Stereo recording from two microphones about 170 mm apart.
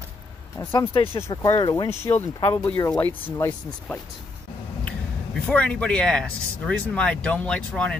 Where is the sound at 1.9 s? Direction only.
15° left (ahead or behind).